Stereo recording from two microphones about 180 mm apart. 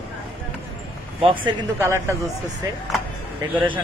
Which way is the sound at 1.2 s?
30° right (ahead or behind).